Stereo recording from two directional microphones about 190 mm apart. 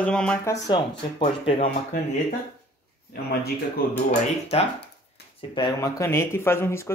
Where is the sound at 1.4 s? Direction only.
30° left (ahead or behind).